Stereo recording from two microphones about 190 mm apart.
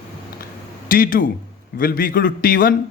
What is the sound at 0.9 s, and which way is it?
A man's voice, 50° left (ahead or behind).